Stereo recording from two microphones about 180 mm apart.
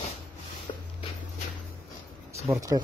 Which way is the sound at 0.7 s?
30° left (ahead or behind).